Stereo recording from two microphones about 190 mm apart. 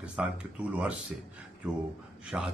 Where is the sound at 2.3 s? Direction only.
10° right (ahead or behind).